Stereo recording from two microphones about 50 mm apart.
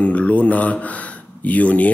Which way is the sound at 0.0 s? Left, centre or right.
Left.